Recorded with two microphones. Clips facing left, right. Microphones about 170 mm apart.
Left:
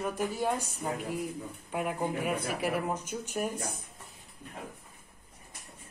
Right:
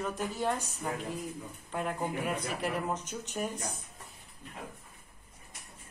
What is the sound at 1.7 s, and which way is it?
Speech, 10° left (ahead or behind).